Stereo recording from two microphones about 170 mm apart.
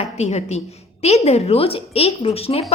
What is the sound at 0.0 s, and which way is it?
A woman's voice, 40° left (ahead or behind).